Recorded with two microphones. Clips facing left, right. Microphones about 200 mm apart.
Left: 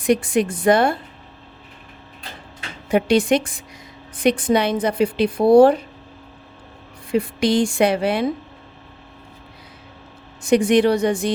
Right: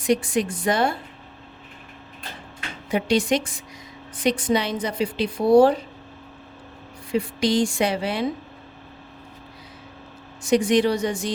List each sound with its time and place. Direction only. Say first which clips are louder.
0.0 s a woman's voice: left 3 dB; 55° left (ahead or behind)
2.9 s a woman's voice: left 5 dB; 55° left (ahead or behind)
7.1 s a woman's voice: left 3 dB; 55° left (ahead or behind)
10.4 s a woman's voice: left 4 dB; 55° left (ahead or behind)